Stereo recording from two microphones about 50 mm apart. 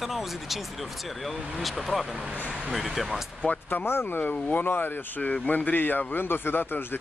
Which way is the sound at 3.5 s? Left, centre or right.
Left.